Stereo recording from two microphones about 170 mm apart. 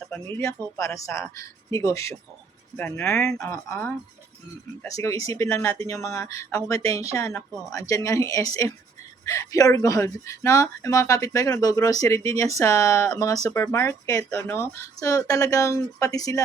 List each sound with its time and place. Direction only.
0.1 s speech: 10° left (ahead or behind)
3.3 s speech: 15° left (ahead or behind)